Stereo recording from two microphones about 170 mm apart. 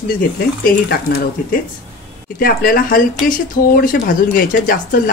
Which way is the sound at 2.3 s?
60° left (ahead or behind).